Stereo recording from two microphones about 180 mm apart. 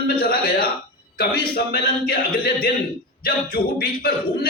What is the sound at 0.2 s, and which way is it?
A man's voice, 55° left (ahead or behind).